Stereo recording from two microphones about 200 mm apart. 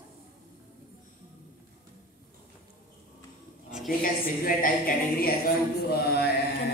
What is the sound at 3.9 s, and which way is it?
Speech, 45° left (ahead or behind).